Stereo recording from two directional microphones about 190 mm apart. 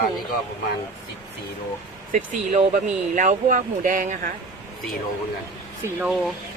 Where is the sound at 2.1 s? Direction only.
45° right (ahead or behind).